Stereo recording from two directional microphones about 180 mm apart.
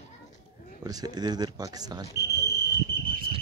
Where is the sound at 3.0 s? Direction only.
55° right (ahead or behind).